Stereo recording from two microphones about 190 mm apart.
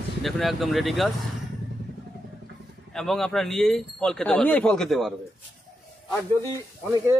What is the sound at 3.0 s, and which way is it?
Speech, centre (ahead or behind).